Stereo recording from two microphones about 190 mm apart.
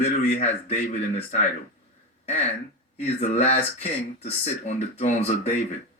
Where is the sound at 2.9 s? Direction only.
35° left (ahead or behind).